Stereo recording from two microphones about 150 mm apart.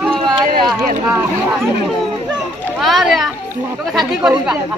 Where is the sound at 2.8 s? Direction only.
Centre (ahead or behind).